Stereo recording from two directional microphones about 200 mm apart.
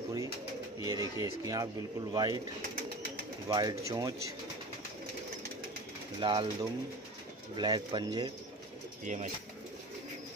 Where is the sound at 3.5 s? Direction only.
20° right (ahead or behind).